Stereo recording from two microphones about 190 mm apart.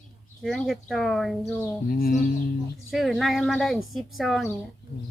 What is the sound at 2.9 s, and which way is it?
Speech, centre (ahead or behind).